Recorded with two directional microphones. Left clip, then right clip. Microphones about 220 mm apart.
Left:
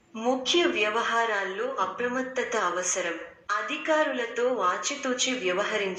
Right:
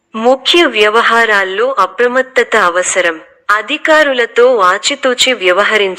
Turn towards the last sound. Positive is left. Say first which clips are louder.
# right 17 dB
turn(degrees=-40)  # may be behind; listen again after turning